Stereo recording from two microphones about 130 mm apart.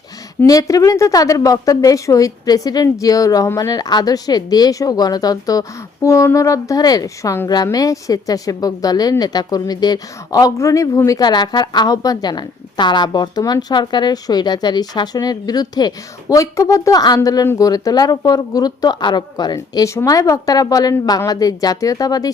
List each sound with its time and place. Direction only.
0.4 s a woman's voice: 25° left (ahead or behind)
19.5 s a woman's voice: 25° left (ahead or behind)